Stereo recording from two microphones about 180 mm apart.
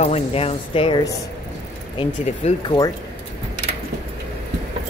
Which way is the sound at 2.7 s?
20° left (ahead or behind).